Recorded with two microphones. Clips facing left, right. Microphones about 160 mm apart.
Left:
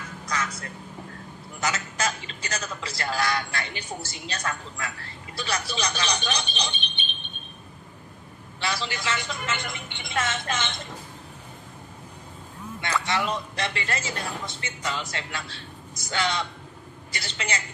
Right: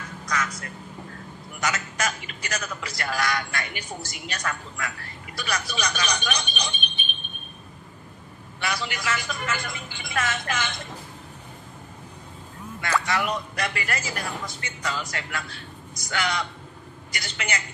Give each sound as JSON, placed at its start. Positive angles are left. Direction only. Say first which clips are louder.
{"t": 0.3, "sound": "a man's voice", "louder": "right 1 dB", "side_deg": 30}
{"t": 8.5, "sound": "a man's voice", "louder": "even", "side_deg": 25}
{"t": 13.0, "sound": "a man's voice", "louder": "right 1 dB", "side_deg": 25}